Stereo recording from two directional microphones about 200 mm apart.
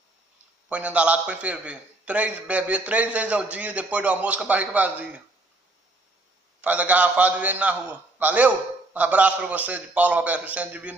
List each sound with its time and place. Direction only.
0.7 s a man's voice: 5° right (ahead or behind)
6.6 s a man's voice: 5° right (ahead or behind)